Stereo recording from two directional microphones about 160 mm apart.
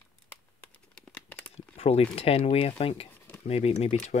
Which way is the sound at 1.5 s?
40° left (ahead or behind).